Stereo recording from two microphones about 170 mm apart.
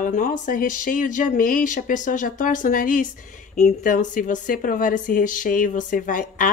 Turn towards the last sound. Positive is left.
turn(degrees=50)  # may be behind; listen again after turning